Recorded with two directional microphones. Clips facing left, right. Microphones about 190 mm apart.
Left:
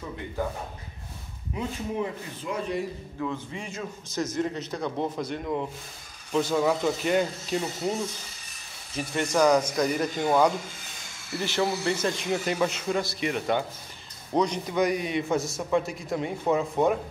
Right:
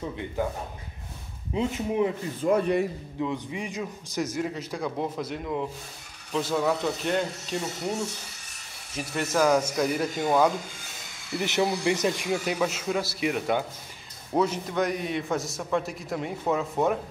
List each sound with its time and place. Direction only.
1.5 s speech: 20° right (ahead or behind)
2.4 s a man's voice: 60° right (ahead or behind)
3.2 s a man's voice: 15° right (ahead or behind); by 7.9 s 5° left (ahead or behind)
8.9 s a man's voice: 5° right (ahead or behind)
11.3 s a man's voice: 20° right (ahead or behind)
12.3 s a man's voice: 5° right (ahead or behind)